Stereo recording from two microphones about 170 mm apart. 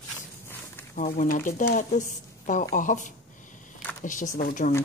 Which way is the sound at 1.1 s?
50° left (ahead or behind).